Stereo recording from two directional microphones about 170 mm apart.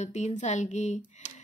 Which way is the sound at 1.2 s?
45° left (ahead or behind).